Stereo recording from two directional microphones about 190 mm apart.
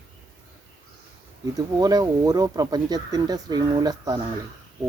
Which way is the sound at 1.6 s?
20° right (ahead or behind).